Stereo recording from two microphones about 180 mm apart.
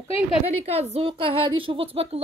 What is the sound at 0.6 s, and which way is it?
A woman's voice, 35° right (ahead or behind).